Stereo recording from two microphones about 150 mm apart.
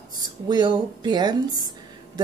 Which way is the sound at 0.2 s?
30° right (ahead or behind).